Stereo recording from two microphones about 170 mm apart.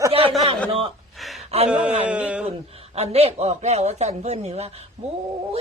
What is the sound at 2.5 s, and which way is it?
Speech, 35° right (ahead or behind).